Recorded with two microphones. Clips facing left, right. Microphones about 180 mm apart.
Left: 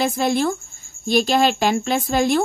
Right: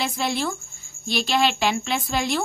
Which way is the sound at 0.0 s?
45° left (ahead or behind).